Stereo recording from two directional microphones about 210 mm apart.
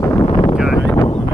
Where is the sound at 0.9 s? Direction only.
15° left (ahead or behind).